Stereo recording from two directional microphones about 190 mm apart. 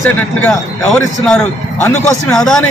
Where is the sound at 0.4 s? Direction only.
5° left (ahead or behind).